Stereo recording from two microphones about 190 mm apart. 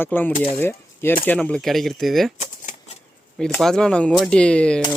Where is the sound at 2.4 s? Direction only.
40° left (ahead or behind).